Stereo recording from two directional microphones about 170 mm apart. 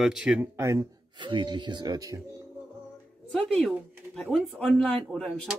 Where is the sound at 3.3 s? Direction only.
Centre (ahead or behind).